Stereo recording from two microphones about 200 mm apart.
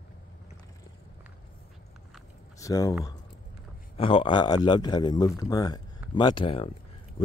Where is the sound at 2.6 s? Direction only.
15° left (ahead or behind).